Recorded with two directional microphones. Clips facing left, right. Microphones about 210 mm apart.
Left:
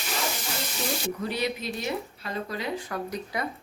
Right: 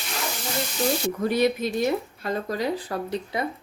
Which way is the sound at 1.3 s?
45° right (ahead or behind).